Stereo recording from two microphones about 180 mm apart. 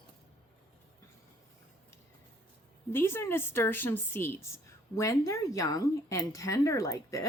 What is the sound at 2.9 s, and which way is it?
A woman's voice, 15° left (ahead or behind).